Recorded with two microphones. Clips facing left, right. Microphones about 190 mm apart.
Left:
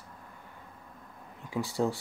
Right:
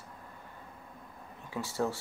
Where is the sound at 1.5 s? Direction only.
15° left (ahead or behind).